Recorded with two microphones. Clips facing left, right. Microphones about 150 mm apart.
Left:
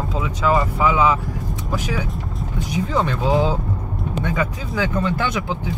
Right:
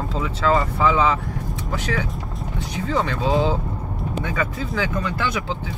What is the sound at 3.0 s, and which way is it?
Speech, 20° left (ahead or behind).